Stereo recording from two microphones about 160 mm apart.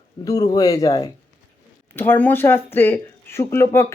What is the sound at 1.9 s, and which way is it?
Speech, 15° left (ahead or behind).